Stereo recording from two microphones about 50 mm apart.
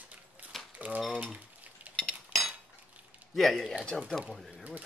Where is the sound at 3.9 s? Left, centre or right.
Centre.